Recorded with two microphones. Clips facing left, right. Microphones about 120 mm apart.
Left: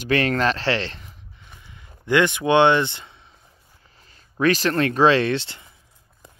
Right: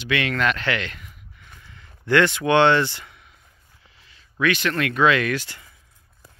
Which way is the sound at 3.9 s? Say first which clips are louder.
Left 1 dB; 40° left (ahead or behind).